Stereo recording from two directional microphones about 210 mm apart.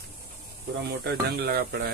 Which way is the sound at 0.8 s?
50° right (ahead or behind).